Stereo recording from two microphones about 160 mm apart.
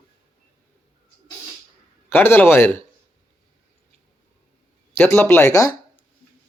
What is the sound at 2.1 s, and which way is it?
Speech, 15° left (ahead or behind).